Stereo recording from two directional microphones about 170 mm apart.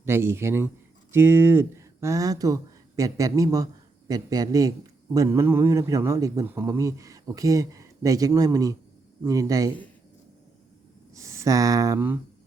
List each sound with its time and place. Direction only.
0.0 s a man's voice: 15° right (ahead or behind)
11.1 s speech: 20° right (ahead or behind)